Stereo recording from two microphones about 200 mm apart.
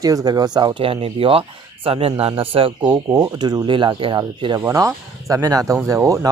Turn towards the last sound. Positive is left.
turn(degrees=-15)  # may be behind; listen again after turning